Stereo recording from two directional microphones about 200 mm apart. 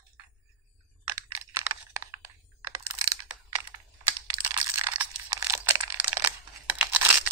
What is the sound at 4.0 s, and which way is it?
Computer keyboard, 20° right (ahead or behind).